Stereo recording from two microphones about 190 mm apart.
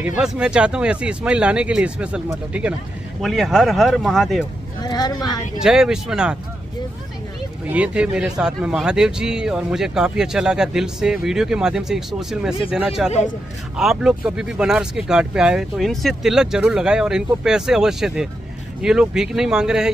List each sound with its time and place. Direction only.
0.0 s a man's voice: 5° right (ahead or behind)
4.8 s speech: 20° left (ahead or behind)
5.6 s a man's voice: 5° right (ahead or behind)
7.6 s a man's voice: 5° right (ahead or behind)